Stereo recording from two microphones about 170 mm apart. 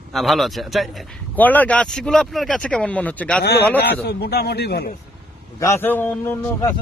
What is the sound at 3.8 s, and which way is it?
A man's voice, 75° left (ahead or behind).